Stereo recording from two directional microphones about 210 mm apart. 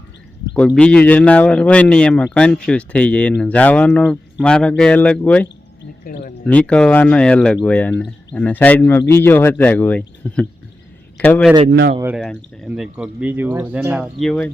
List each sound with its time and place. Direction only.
0.5 s speech: 5° left (ahead or behind)
6.1 s speech: 40° left (ahead or behind)
6.4 s speech: 5° left (ahead or behind)
11.7 s speech: 55° right (ahead or behind)
12.1 s speech: centre (ahead or behind)